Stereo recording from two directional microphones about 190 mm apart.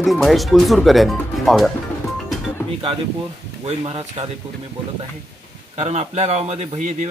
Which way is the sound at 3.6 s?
30° right (ahead or behind).